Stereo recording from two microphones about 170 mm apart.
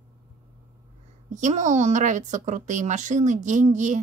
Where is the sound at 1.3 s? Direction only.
45° right (ahead or behind).